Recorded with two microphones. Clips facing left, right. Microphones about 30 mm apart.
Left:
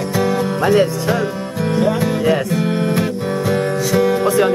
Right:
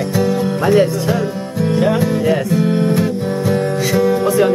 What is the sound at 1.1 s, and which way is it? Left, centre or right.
Music, centre.